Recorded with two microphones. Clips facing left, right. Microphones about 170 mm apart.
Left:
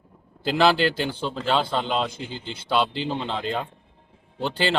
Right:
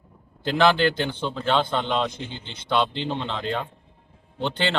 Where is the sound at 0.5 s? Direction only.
5° left (ahead or behind).